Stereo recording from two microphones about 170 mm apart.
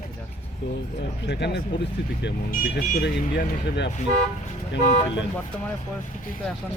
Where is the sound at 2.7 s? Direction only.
70° left (ahead or behind).